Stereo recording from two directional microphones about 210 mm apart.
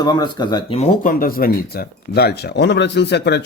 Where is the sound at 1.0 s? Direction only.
45° left (ahead or behind).